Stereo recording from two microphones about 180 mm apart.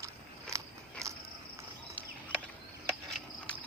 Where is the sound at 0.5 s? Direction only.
15° right (ahead or behind).